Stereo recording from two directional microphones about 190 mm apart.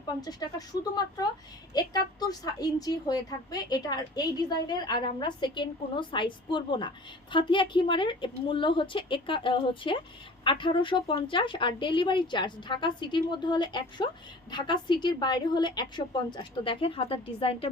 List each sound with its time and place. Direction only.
0.2 s a woman's voice: 20° left (ahead or behind)
1.7 s a woman's voice: 20° left (ahead or behind)